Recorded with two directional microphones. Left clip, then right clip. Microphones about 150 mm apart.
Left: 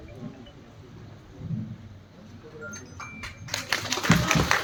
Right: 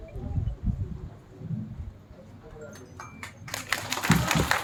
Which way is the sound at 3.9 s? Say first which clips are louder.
Left 2 dB; 20° right (ahead or behind).